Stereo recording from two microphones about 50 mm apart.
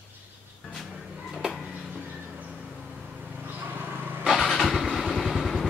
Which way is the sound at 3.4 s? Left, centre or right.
Right.